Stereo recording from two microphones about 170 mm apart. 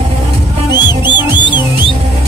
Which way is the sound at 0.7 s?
25° left (ahead or behind).